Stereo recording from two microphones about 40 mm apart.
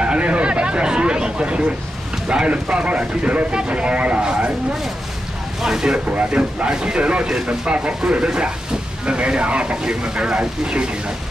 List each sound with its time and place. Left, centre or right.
0.0 s a sound: right
2.3 s speech: right
5.6 s speech: centre
6.1 s speech: right